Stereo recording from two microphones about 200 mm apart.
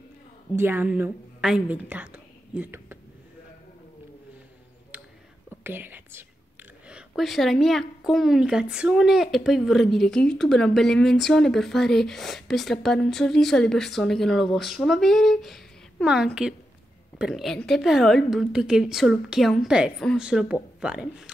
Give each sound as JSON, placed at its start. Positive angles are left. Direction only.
{"t": 0.6, "sound": "a woman's voice", "side_deg": -10}
{"t": 4.9, "sound": "whispering", "side_deg": -5}
{"t": 5.6, "sound": "a woman's voice", "side_deg": -10}